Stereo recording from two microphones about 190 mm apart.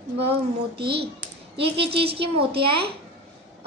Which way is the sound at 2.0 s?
30° right (ahead or behind).